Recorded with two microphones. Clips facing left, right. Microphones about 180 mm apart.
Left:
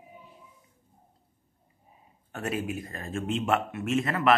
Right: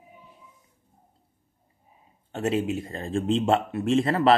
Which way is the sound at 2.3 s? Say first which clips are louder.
Right 6 dB; 25° right (ahead or behind).